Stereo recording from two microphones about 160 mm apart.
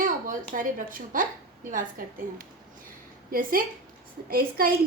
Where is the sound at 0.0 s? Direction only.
60° right (ahead or behind).